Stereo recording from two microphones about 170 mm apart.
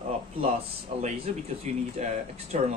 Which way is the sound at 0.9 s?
45° right (ahead or behind).